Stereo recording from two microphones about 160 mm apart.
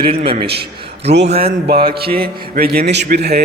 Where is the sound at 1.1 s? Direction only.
90° right.